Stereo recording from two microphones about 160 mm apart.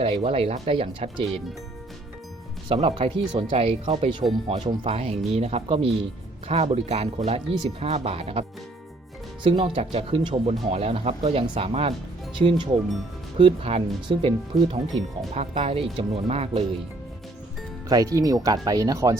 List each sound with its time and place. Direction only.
0.0 s speech: 35° right (ahead or behind)
2.6 s speech: 35° right (ahead or behind)
13.4 s speech: 35° right (ahead or behind)
15.3 s speech: 45° right (ahead or behind)
17.8 s speech: 20° right (ahead or behind)